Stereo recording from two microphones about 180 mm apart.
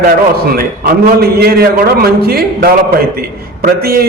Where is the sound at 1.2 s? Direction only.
60° right (ahead or behind).